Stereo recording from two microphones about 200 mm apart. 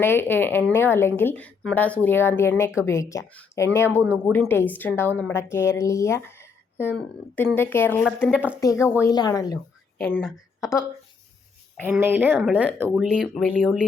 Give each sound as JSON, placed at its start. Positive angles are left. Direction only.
{"t": 0.0, "sound": "a woman's voice", "side_deg": 10}
{"t": 8.3, "sound": "speech", "side_deg": -5}
{"t": 8.6, "sound": "a woman's voice", "side_deg": 15}
{"t": 11.9, "sound": "speech", "side_deg": -10}